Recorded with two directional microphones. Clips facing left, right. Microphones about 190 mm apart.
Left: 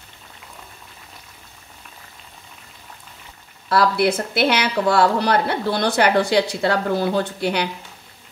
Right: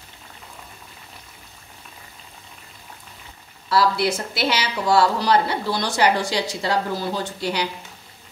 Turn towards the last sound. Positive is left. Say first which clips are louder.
# left 3 dB
turn(degrees=60)  # may be behind; listen again after turning